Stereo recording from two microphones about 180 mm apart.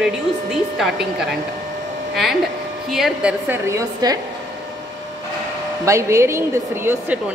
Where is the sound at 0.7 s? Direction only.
Centre (ahead or behind).